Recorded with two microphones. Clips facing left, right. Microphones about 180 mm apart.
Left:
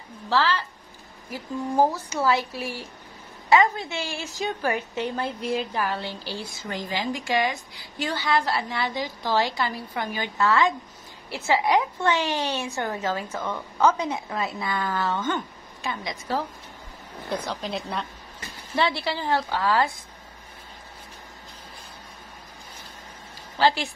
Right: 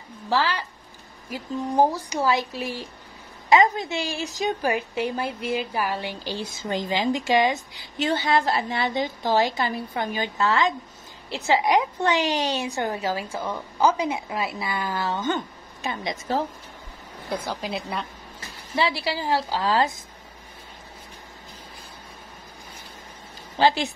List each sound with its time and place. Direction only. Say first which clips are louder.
0.3 s a woman's voice: even; 15° right (ahead or behind)
17.3 s a woman's voice: even; 5° right (ahead or behind)
19.0 s speech: right 1 dB; 10° right (ahead or behind)
23.6 s a woman's voice: right 2 dB; 20° right (ahead or behind)